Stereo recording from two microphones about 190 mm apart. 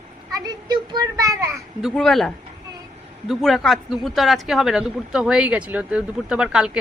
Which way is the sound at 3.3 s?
Centre (ahead or behind).